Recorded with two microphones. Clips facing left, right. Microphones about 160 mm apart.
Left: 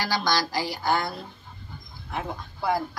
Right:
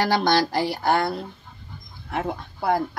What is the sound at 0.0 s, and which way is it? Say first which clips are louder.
Speech: right 6 dB; 60° right (ahead or behind).